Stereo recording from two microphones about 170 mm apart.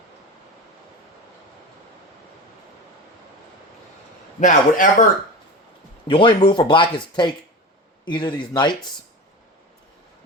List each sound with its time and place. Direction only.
4.4 s a man's voice: 50° left (ahead or behind)
6.1 s speech: 30° left (ahead or behind)